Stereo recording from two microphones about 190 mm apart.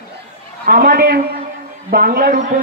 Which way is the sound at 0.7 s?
55° right (ahead or behind).